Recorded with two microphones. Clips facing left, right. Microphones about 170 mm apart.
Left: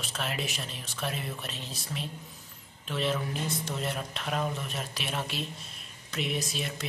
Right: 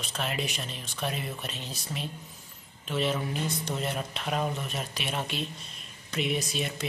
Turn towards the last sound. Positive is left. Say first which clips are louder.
# right 3 dB
turn(degrees=0)  # may be behind; listen again after turning